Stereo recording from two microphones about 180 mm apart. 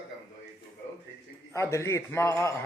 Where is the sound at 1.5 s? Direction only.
15° left (ahead or behind).